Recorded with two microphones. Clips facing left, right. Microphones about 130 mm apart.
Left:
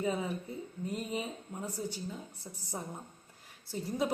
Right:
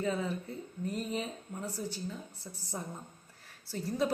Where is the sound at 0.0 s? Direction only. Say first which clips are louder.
Even; 15° left (ahead or behind).